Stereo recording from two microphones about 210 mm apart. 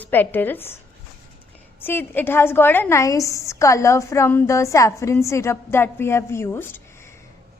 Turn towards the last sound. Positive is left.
turn(degrees=10)  # may be behind; listen again after turning